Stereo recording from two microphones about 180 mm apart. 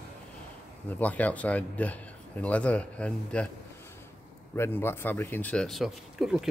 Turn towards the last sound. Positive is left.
turn(degrees=-5)  # may be behind; listen again after turning